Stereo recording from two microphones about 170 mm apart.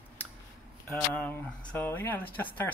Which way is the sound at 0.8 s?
5° left (ahead or behind).